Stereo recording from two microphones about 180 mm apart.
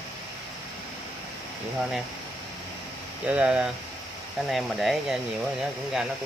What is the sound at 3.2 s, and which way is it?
Speech, 5° right (ahead or behind).